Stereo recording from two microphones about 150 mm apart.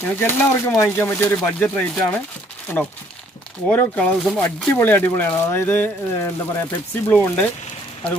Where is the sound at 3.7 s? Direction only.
10° left (ahead or behind).